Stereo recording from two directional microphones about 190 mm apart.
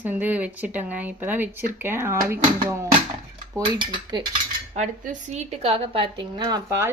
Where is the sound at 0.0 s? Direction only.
10° right (ahead or behind).